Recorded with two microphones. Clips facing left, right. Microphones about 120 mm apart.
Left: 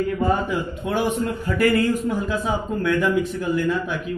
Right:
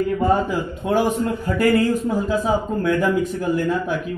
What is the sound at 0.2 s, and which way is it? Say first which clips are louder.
A man's voice: right 3 dB; 35° right (ahead or behind).